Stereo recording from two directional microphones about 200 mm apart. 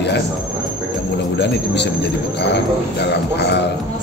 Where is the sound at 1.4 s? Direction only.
60° left (ahead or behind).